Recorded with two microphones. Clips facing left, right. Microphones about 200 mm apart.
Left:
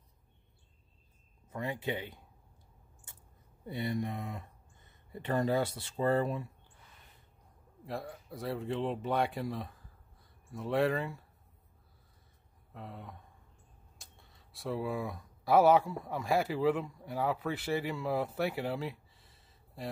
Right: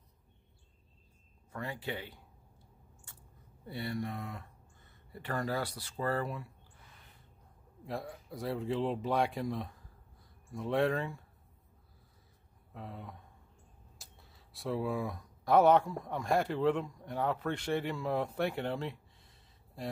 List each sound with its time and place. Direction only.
1.5 s speech: 20° left (ahead or behind)
3.6 s speech: 20° left (ahead or behind)
7.8 s speech: centre (ahead or behind)
12.7 s speech: centre (ahead or behind)